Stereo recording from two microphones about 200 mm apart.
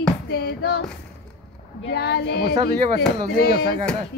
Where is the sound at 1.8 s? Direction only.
55° left (ahead or behind).